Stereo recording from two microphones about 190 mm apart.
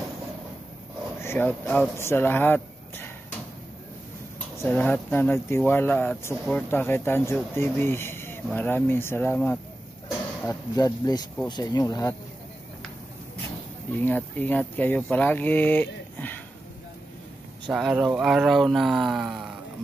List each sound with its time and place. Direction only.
1.2 s speech: 10° left (ahead or behind)
4.6 s speech: 10° left (ahead or behind)
14.0 s speech: 10° left (ahead or behind)
17.6 s speech: centre (ahead or behind)